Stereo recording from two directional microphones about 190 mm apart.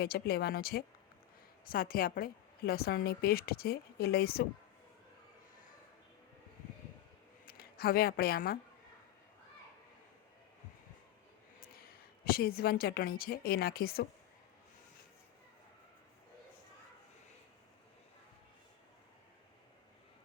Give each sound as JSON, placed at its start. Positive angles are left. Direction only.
{"t": 0.0, "sound": "a woman's voice", "side_deg": 55}
{"t": 7.4, "sound": "speech", "side_deg": 50}
{"t": 11.8, "sound": "a woman's voice", "side_deg": 50}